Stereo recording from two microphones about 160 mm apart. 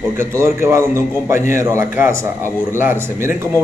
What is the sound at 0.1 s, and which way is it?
A man's voice, 15° right (ahead or behind).